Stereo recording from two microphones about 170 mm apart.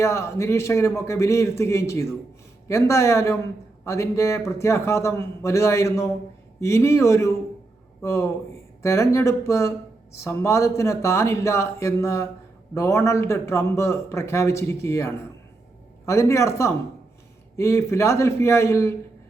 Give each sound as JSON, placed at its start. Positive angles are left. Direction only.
{"t": 0.0, "sound": "speech", "side_deg": 15}